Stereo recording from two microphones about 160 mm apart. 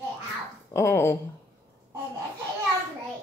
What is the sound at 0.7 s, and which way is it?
Speech, 15° left (ahead or behind).